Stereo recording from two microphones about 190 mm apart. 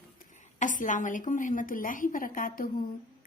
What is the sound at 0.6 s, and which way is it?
A woman's voice, 40° left (ahead or behind).